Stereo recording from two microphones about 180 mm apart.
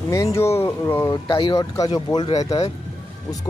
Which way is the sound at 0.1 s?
15° left (ahead or behind).